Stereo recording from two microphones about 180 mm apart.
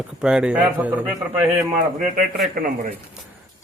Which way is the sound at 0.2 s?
5° right (ahead or behind).